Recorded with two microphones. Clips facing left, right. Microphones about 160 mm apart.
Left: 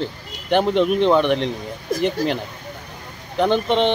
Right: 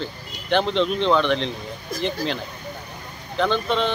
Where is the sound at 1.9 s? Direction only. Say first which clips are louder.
Left 5 dB; 55° left (ahead or behind).